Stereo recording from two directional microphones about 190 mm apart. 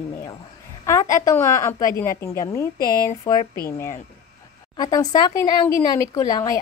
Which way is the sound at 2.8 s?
50° left (ahead or behind).